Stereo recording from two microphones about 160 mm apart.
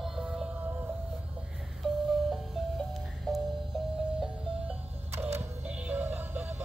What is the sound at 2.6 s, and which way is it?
Music, centre (ahead or behind).